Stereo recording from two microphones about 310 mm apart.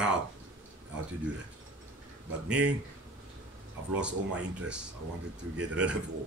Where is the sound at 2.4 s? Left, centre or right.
Centre.